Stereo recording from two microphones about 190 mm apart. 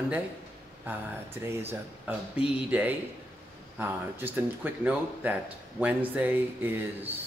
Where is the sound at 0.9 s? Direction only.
10° right (ahead or behind).